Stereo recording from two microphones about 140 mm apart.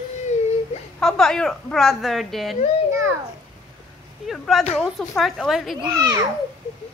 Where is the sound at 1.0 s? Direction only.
5° left (ahead or behind).